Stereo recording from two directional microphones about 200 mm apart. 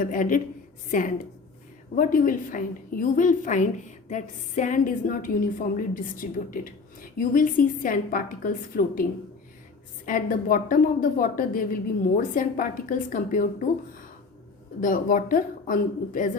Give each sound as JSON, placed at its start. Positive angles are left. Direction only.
{"t": 0.0, "sound": "a woman's voice", "side_deg": 45}
{"t": 10.1, "sound": "a woman's voice", "side_deg": 45}
{"t": 14.8, "sound": "a woman's voice", "side_deg": 40}